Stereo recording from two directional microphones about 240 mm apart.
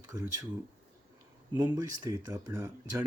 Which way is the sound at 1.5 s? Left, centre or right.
Centre.